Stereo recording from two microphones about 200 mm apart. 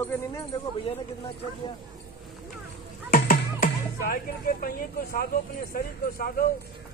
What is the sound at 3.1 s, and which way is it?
Music, 45° left (ahead or behind).